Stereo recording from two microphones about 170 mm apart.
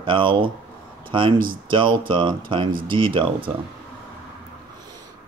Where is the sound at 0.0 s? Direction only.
30° right (ahead or behind).